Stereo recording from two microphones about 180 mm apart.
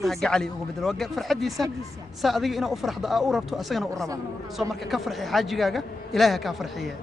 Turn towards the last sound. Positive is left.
turn(degrees=0)  # may be behind; listen again after turning